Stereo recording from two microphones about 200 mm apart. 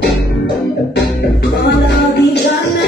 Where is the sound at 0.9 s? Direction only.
55° left (ahead or behind).